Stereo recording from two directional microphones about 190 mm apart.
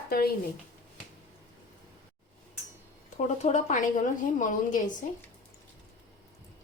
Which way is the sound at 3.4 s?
40° left (ahead or behind).